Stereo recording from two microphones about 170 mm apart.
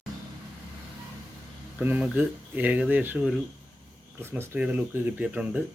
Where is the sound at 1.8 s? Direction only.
10° right (ahead or behind).